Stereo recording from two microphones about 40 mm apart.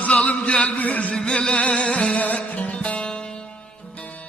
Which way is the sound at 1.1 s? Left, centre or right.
Left.